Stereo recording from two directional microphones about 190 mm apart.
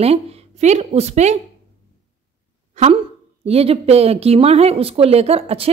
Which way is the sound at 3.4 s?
30° right (ahead or behind).